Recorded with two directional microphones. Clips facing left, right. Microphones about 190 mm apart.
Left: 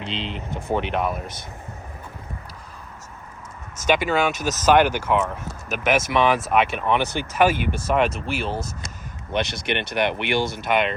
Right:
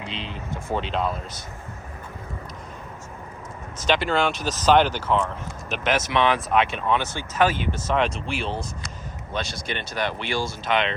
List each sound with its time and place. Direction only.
0.0 s speech: 25° left (ahead or behind)
0.7 s speech: 15° left (ahead or behind)
3.8 s speech: 10° left (ahead or behind)
4.4 s speech: 45° left (ahead or behind)
4.6 s speech: 10° left (ahead or behind)
9.3 s speech: 20° left (ahead or behind)
9.6 s speech: 65° left (ahead or behind)
10.7 s speech: 10° left (ahead or behind)